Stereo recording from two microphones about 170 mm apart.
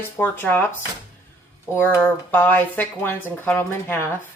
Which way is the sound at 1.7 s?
10° left (ahead or behind).